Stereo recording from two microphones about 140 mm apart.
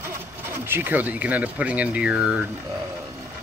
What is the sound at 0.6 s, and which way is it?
Speech, 15° right (ahead or behind).